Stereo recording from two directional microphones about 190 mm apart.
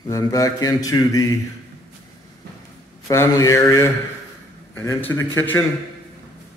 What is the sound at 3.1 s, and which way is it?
Speech, 15° left (ahead or behind).